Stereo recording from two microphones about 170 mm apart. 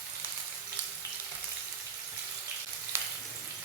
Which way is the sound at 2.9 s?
15° right (ahead or behind).